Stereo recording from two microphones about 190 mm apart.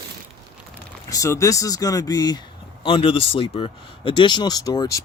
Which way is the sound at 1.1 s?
15° left (ahead or behind).